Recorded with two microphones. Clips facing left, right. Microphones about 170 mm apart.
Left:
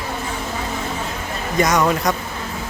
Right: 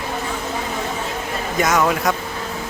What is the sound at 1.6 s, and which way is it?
Speech, 5° right (ahead or behind).